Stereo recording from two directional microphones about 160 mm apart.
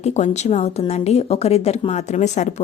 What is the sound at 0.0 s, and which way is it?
Speech, 45° left (ahead or behind).